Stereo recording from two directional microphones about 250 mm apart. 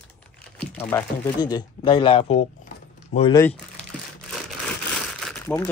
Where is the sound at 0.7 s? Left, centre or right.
Centre.